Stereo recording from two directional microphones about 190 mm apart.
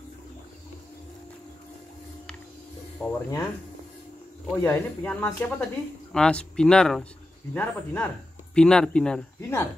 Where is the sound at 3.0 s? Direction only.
15° left (ahead or behind).